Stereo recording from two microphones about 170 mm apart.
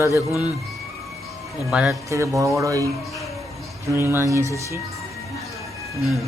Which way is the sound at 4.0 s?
15° right (ahead or behind).